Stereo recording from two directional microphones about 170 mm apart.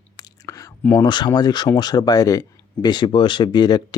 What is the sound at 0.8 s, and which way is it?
Speech, 15° left (ahead or behind).